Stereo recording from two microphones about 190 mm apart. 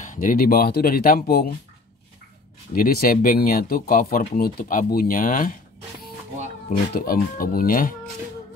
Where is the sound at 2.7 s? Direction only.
50° left (ahead or behind).